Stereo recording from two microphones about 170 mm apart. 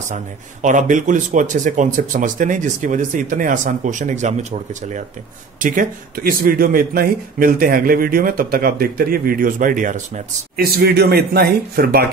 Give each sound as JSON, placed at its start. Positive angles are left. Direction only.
{"t": 0.1, "sound": "speech", "side_deg": -50}